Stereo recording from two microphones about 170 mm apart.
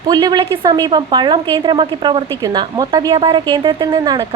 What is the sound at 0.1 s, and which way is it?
Speech, 25° right (ahead or behind).